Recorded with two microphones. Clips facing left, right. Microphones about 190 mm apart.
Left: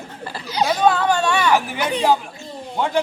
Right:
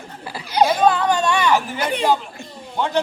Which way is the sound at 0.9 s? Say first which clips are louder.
Even; centre (ahead or behind).